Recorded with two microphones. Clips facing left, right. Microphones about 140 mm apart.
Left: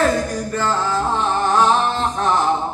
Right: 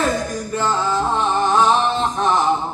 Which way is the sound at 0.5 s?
5° right (ahead or behind).